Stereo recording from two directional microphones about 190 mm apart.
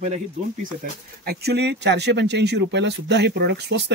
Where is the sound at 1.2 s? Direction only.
55° right (ahead or behind).